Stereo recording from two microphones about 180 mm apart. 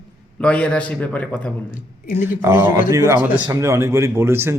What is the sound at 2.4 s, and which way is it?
Speech, 15° right (ahead or behind).